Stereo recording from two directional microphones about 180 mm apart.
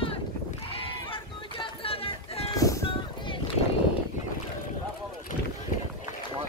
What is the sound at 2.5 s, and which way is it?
Vehicle, 20° left (ahead or behind).